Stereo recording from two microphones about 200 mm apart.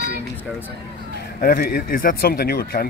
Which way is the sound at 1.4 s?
45° left (ahead or behind).